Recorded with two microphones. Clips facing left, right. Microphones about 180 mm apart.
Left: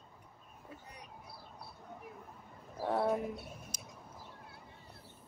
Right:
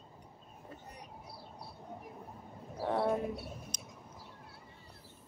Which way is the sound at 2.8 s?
5° left (ahead or behind).